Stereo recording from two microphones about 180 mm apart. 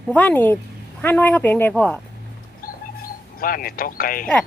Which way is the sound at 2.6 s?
50° left (ahead or behind).